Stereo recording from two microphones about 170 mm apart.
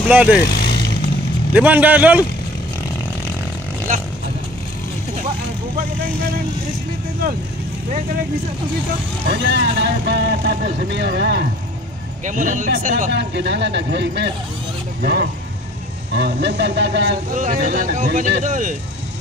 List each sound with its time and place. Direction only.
0.1 s a man's voice: 5° right (ahead or behind)
0.4 s speech: 65° left (ahead or behind)
1.5 s a man's voice: 10° right (ahead or behind)
9.3 s speech: 90° right
12.3 s speech: 50° right (ahead or behind)
13.1 s speech: 90° right
15.0 s speech: 70° right (ahead or behind)
16.1 s speech: 80° right
17.4 s speech: 55° right (ahead or behind)